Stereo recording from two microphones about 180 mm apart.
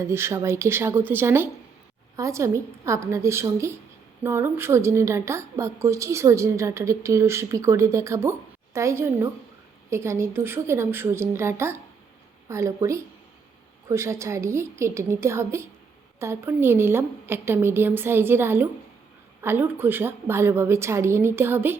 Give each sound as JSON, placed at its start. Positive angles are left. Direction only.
{"t": 0.0, "sound": "a woman's voice", "side_deg": -15}